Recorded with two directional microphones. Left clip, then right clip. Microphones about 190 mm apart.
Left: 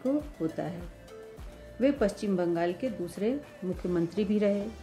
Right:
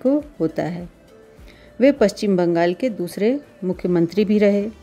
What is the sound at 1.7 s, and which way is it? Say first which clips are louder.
A woman's voice: right 11 dB; 35° right (ahead or behind).